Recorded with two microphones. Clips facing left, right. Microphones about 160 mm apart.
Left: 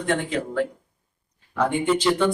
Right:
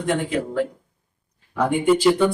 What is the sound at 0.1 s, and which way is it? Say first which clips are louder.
A man's voice: right 2 dB; 10° right (ahead or behind).